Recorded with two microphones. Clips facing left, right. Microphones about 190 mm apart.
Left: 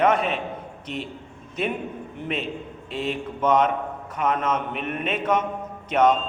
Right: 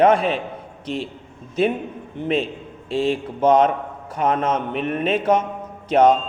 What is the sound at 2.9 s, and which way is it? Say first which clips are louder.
A man's voice: right 7 dB; 30° right (ahead or behind).